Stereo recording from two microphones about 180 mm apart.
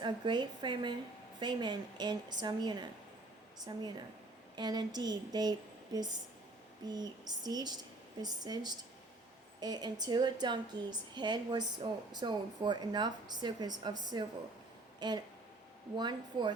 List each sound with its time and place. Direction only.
0.0 s a woman's voice: 25° right (ahead or behind)